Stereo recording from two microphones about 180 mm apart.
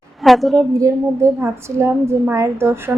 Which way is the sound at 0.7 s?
15° right (ahead or behind).